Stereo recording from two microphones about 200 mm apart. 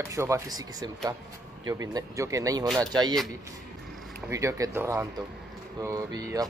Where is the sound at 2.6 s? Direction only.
Centre (ahead or behind).